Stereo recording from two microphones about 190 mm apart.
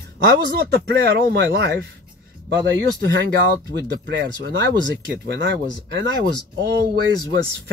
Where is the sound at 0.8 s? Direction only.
60° right (ahead or behind).